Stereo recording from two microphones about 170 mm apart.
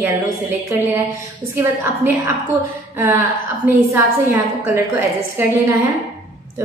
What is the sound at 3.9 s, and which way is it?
A woman's voice, 15° right (ahead or behind).